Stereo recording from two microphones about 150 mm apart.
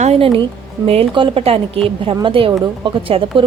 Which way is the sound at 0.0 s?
40° right (ahead or behind).